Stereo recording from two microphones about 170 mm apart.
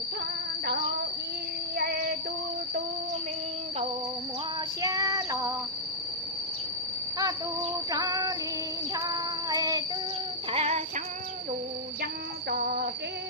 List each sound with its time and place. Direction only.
1.7 s child singing: 65° right (ahead or behind)
4.8 s child singing: 20° right (ahead or behind)
7.9 s female singing: 20° right (ahead or behind)
8.9 s child singing: 20° right (ahead or behind)
10.5 s a sound: 40° right (ahead or behind)
12.5 s cricket: 55° right (ahead or behind)